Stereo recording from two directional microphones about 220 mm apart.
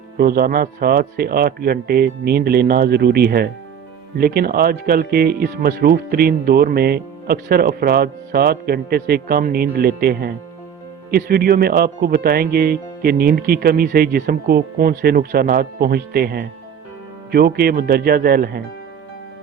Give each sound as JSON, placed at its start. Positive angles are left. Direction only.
{"t": 0.2, "sound": "speech", "side_deg": -45}